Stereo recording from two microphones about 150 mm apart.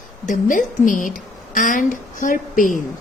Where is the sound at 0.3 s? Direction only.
60° left (ahead or behind).